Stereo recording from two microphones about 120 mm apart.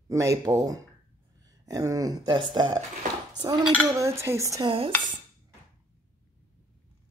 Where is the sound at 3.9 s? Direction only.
25° right (ahead or behind).